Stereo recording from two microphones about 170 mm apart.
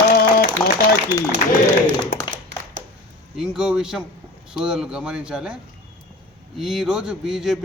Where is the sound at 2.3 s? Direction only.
90° right.